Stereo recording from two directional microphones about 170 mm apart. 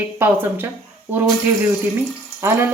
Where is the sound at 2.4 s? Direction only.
15° right (ahead or behind).